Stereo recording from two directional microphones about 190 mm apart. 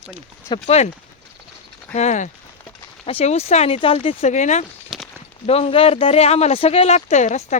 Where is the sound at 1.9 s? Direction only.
40° left (ahead or behind).